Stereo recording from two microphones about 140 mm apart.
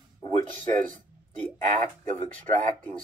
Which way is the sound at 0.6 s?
70° right (ahead or behind).